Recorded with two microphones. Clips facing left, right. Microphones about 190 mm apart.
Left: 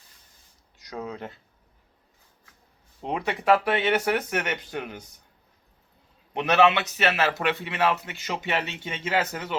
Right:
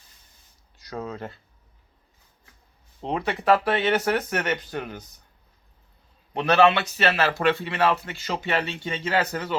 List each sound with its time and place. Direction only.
1.0 s a man's voice: 15° left (ahead or behind)
3.0 s a man's voice: 10° left (ahead or behind)
6.3 s a man's voice: 20° left (ahead or behind)